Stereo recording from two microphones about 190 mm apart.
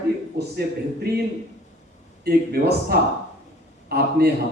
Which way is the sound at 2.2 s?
55° right (ahead or behind).